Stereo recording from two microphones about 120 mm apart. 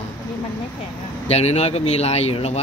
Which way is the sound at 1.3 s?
60° left (ahead or behind).